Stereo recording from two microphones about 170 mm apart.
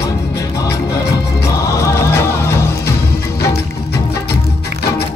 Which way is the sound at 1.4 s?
20° left (ahead or behind).